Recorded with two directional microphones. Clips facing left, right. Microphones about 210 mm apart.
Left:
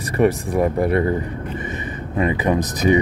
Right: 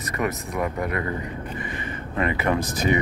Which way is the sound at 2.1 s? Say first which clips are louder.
Left 4 dB; 15° left (ahead or behind).